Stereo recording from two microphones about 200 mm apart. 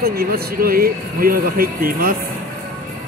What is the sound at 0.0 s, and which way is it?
Speech, 50° right (ahead or behind).